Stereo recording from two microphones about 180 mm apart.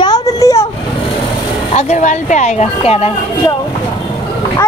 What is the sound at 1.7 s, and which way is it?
Speech, 40° left (ahead or behind).